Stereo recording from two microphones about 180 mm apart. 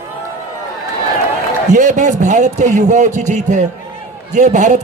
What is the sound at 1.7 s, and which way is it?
A man's voice, 45° right (ahead or behind).